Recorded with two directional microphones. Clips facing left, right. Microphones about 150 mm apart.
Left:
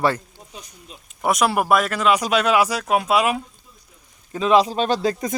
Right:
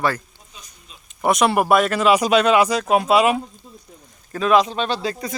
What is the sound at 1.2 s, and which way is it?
Speech, centre (ahead or behind).